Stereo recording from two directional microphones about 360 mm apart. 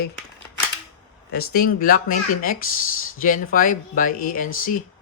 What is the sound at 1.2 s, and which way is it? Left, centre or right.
Speech, left.